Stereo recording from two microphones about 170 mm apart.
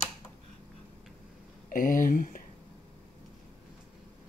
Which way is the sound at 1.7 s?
55° left (ahead or behind).